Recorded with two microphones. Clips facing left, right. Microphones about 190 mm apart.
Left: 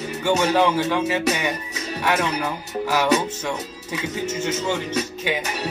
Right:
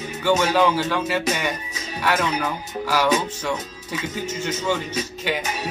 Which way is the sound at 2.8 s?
20° left (ahead or behind).